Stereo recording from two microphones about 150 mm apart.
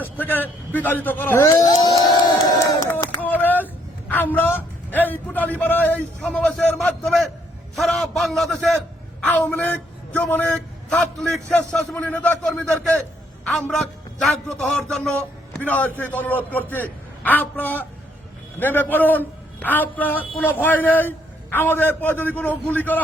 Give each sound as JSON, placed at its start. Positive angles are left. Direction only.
{"t": 0.0, "sound": "a man's voice", "side_deg": 10}
{"t": 2.8, "sound": "a sound", "side_deg": 20}
{"t": 4.1, "sound": "a man's voice", "side_deg": 10}
{"t": 9.2, "sound": "a man's voice", "side_deg": 10}